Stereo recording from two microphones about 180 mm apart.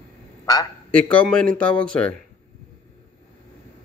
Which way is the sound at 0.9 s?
5° left (ahead or behind).